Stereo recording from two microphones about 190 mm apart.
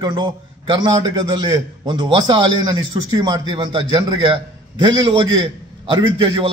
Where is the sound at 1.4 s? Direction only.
25° right (ahead or behind).